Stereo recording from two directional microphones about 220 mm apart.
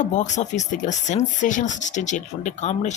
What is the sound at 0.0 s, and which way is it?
Speech, 35° left (ahead or behind).